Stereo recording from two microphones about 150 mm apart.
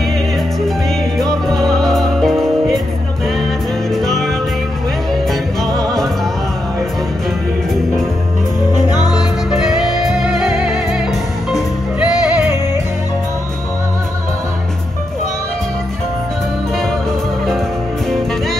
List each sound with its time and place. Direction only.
1.1 s music: centre (ahead or behind)
3.9 s music: centre (ahead or behind)
5.7 s music: 25° right (ahead or behind)
8.7 s music: 25° left (ahead or behind)
10.0 s music: centre (ahead or behind)